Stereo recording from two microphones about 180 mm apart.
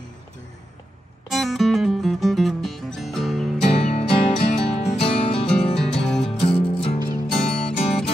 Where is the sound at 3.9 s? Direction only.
35° left (ahead or behind).